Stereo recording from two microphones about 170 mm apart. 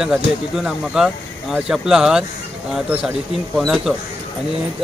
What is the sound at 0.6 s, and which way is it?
Speech, 5° right (ahead or behind).